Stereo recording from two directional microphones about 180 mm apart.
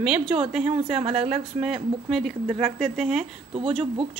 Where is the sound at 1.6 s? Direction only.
Centre (ahead or behind).